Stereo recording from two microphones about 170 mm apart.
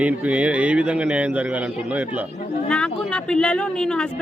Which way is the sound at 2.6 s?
5° left (ahead or behind).